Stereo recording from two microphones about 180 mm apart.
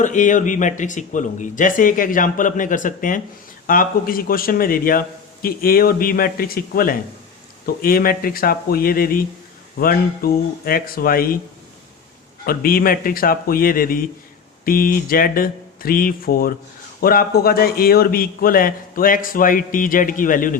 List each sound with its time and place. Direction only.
0.0 s a man's voice: 45° left (ahead or behind)
12.5 s a man's voice: 55° left (ahead or behind)